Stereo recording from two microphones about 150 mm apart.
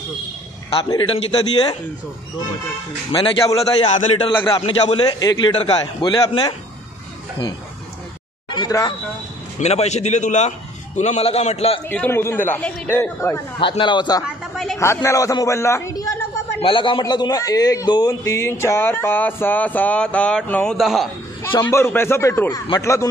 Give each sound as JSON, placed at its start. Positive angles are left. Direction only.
{"t": 0.7, "sound": "a man's voice", "side_deg": 35}
{"t": 3.1, "sound": "a man's voice", "side_deg": 35}
{"t": 3.4, "sound": "a man's voice", "side_deg": 25}
{"t": 4.3, "sound": "a man's voice", "side_deg": 10}
{"t": 4.9, "sound": "a man's voice", "side_deg": 25}
{"t": 8.5, "sound": "a sound", "side_deg": 30}
{"t": 9.6, "sound": "a man's voice", "side_deg": 45}
{"t": 11.9, "sound": "a man's voice", "side_deg": 15}
{"t": 13.6, "sound": "a man's voice", "side_deg": 35}
{"t": 14.2, "sound": "speech", "side_deg": 0}
{"t": 14.8, "sound": "a man's voice", "side_deg": 20}
{"t": 16.6, "sound": "a man's voice", "side_deg": 35}
{"t": 21.6, "sound": "a man's voice", "side_deg": 15}